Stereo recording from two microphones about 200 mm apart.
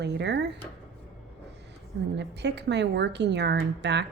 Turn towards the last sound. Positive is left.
turn(degrees=-60)  # may be behind; listen again after turning